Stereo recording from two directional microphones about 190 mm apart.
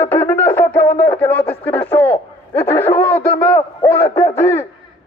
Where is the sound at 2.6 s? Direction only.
10° left (ahead or behind).